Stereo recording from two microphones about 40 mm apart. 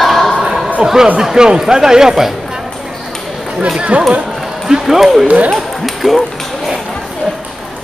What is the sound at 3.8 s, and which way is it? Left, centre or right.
Speech, right.